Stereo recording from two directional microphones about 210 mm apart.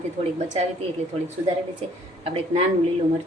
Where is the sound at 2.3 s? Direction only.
30° right (ahead or behind).